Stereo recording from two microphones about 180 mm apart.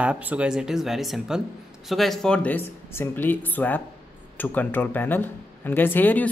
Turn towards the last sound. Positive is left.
turn(degrees=10)  # may be behind; listen again after turning